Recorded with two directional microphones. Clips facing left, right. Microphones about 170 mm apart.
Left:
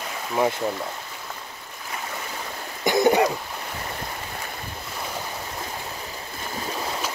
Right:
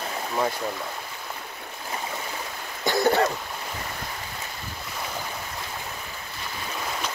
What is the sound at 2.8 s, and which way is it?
Cough, 15° left (ahead or behind).